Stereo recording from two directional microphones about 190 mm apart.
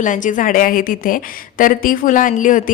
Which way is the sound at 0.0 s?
40° left (ahead or behind).